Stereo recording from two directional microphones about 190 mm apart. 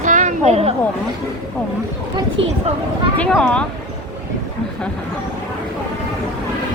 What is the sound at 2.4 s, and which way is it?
Speech, 30° right (ahead or behind).